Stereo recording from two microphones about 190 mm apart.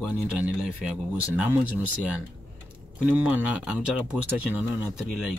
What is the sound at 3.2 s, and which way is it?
Speech, 5° right (ahead or behind).